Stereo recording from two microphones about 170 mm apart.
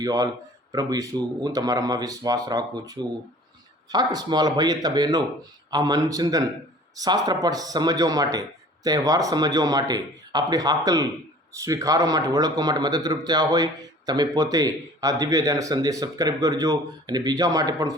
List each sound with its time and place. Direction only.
0.0 s a man's voice: 20° right (ahead or behind)